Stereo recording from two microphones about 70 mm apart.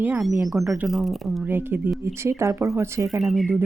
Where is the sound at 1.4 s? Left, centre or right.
Right.